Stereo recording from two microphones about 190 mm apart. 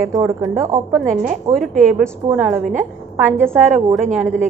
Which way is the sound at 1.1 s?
40° right (ahead or behind).